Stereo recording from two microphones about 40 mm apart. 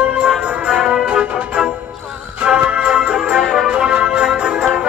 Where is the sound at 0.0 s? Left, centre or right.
Right.